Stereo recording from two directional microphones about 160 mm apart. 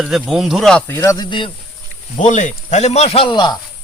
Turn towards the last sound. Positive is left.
turn(degrees=30)  # may be behind; listen again after turning